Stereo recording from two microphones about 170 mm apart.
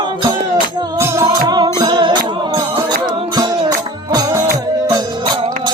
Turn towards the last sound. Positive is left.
turn(degrees=-20)  # may be behind; listen again after turning